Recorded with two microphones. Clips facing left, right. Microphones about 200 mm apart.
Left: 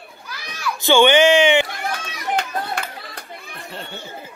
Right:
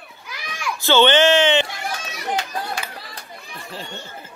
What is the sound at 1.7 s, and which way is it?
Run, 55° left (ahead or behind).